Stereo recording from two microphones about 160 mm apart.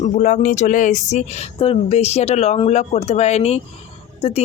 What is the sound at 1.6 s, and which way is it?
Speech, 40° left (ahead or behind).